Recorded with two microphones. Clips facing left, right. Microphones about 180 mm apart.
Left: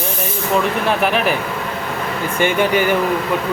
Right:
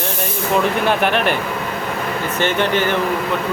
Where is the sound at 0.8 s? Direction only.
Centre (ahead or behind).